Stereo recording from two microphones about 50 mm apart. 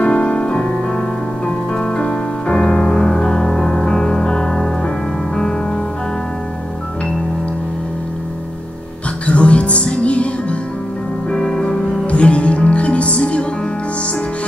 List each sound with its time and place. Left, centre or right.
0.0 s music: left
1.8 s music: centre
9.2 s music: left
11.3 s music: centre
12.1 s music: left